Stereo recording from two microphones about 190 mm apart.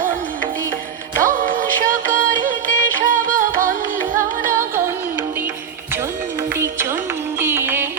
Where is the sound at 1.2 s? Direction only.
45° right (ahead or behind).